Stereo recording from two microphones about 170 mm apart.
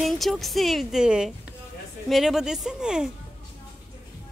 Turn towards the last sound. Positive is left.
turn(degrees=-5)  # may be behind; listen again after turning